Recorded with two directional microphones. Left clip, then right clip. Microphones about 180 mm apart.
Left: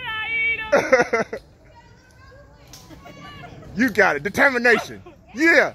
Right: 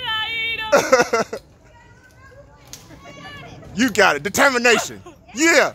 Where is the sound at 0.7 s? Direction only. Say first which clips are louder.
Right 3 dB; 5° right (ahead or behind).